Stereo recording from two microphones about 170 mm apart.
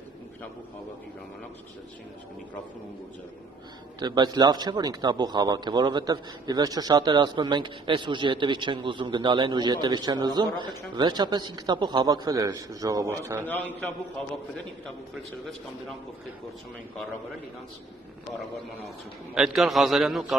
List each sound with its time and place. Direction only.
4.0 s a man's voice: 25° right (ahead or behind)
19.3 s a man's voice: centre (ahead or behind)